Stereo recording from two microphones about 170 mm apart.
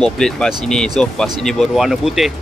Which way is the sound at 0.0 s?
5° left (ahead or behind).